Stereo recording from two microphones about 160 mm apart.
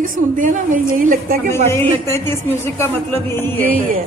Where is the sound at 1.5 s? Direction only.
15° left (ahead or behind).